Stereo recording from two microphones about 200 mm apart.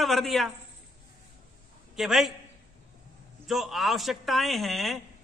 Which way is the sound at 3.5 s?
Centre (ahead or behind).